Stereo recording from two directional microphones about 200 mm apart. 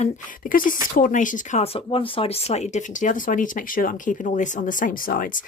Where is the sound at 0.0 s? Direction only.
40° left (ahead or behind).